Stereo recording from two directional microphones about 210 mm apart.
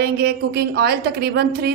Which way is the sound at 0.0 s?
50° right (ahead or behind).